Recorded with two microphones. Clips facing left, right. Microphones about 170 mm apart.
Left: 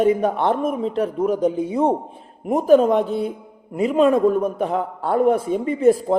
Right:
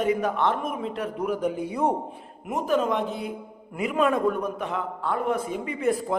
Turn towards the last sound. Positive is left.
turn(degrees=35)  # may be behind; listen again after turning